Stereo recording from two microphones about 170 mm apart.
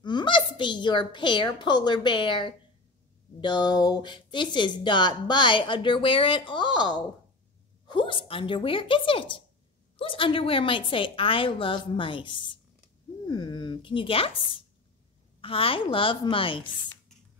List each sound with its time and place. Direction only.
0.0 s a woman's voice: 25° left (ahead or behind)